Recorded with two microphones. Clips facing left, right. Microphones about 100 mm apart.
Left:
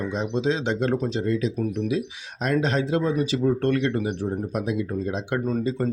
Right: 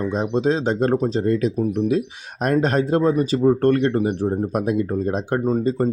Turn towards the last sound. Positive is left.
turn(degrees=-40)  # may be behind; listen again after turning